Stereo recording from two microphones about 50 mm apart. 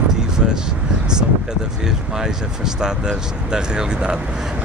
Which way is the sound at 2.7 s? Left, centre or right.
Centre.